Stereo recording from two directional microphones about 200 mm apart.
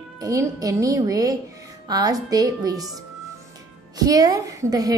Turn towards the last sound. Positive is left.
turn(degrees=-20)  # may be behind; listen again after turning